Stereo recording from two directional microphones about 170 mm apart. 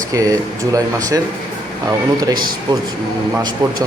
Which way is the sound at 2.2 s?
25° right (ahead or behind).